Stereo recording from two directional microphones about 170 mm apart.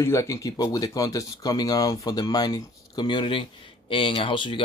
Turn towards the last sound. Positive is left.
turn(degrees=30)  # may be behind; listen again after turning